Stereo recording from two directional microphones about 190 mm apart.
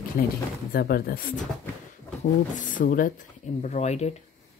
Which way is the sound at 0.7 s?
55° left (ahead or behind).